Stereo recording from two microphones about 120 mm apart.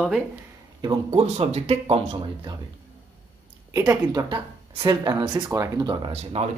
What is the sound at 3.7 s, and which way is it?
Speech, 30° right (ahead or behind).